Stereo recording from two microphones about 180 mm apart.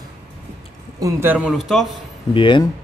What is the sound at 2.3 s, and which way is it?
Speech, 25° left (ahead or behind).